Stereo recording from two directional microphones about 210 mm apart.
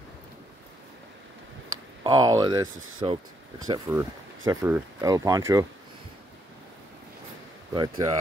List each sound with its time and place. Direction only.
2.0 s speech: 20° right (ahead or behind)
7.7 s speech: 20° right (ahead or behind)